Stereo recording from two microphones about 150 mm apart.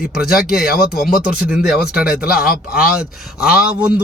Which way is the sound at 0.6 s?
90° left.